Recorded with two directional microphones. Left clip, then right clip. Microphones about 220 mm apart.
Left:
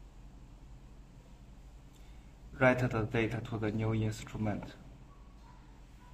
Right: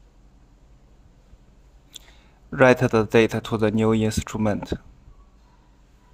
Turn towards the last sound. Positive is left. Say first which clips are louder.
# right 14 dB
turn(degrees=-50)  # may be behind; listen again after turning